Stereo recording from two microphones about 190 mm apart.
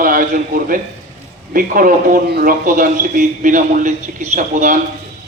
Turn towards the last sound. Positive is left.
turn(degrees=-40)  # may be behind; listen again after turning